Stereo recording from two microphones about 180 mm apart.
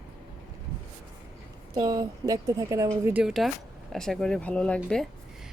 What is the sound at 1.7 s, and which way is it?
Speech, 20° right (ahead or behind).